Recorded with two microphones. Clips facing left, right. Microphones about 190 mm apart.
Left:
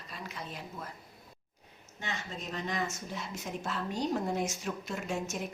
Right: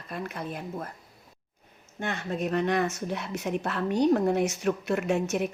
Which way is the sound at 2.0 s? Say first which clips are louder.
Right 10 dB; 60° right (ahead or behind).